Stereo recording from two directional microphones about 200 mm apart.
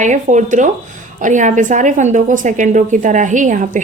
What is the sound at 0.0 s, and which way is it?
A woman's voice, 40° right (ahead or behind).